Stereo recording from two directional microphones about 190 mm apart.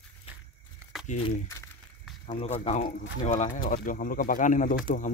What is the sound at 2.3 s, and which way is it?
Speech, 35° left (ahead or behind).